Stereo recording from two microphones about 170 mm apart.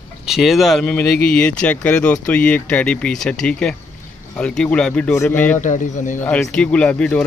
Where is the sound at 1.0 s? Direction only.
65° left (ahead or behind).